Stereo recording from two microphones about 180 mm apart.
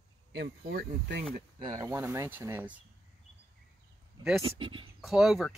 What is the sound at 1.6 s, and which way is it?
Speech, 25° right (ahead or behind).